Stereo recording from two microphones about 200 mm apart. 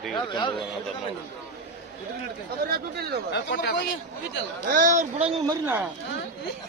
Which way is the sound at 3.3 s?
50° left (ahead or behind).